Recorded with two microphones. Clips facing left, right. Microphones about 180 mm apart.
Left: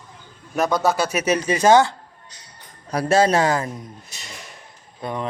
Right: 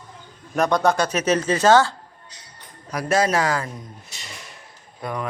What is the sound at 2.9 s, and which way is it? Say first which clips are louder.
Speech: left 3 dB; 30° left (ahead or behind).